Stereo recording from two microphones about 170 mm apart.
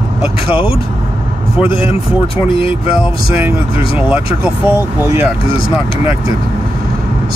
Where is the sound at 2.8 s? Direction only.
10° right (ahead or behind).